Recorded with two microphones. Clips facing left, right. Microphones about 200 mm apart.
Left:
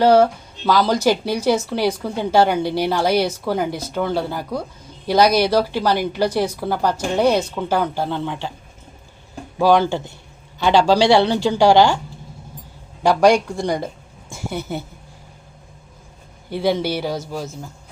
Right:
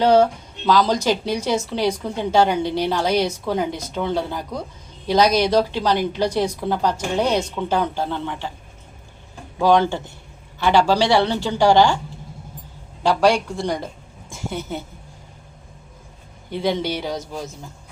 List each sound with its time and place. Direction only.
0.0 s speech: 5° left (ahead or behind)
9.6 s speech: 10° left (ahead or behind)
13.0 s a woman's voice: 15° left (ahead or behind)
16.5 s speech: 5° left (ahead or behind)